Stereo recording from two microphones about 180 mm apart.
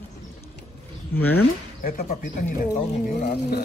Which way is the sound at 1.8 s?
50° left (ahead or behind).